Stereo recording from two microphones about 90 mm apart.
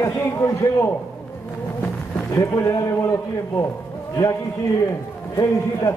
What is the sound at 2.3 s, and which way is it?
A man's voice, 35° left (ahead or behind).